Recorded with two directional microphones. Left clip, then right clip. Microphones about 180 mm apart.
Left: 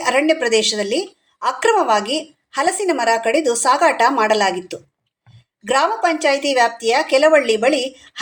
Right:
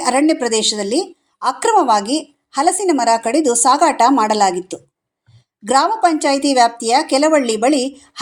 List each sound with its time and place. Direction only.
0.0 s a woman's voice: 30° right (ahead or behind)